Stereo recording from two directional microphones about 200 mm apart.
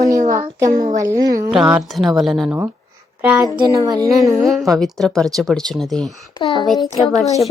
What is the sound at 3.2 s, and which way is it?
Speech, 10° right (ahead or behind).